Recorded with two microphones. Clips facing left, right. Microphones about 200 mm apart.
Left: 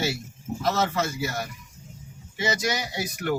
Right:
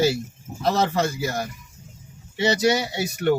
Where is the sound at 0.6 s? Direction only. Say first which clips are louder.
Right 4 dB; 30° right (ahead or behind).